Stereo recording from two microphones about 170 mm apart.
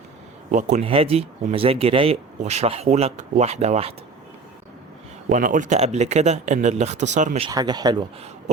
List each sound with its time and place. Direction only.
0.5 s speech: 40° right (ahead or behind)
5.3 s speech: 50° right (ahead or behind)
7.4 s speech: 25° right (ahead or behind)